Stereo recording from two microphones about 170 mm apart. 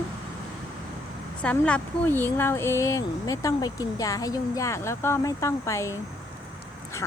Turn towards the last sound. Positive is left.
turn(degrees=15)  # may be behind; listen again after turning